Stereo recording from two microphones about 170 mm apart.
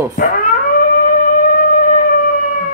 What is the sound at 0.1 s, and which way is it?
Speech, 60° left (ahead or behind).